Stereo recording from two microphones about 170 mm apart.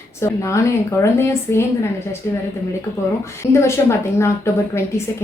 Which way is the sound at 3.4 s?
15° left (ahead or behind).